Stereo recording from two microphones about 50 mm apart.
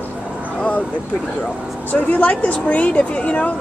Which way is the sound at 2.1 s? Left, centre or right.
Left.